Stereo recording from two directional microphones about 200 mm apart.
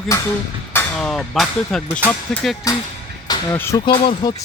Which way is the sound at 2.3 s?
Centre (ahead or behind).